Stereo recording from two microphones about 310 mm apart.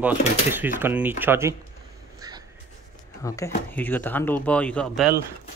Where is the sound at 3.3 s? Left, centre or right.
Centre.